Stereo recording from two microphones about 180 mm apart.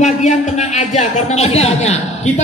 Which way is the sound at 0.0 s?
40° left (ahead or behind).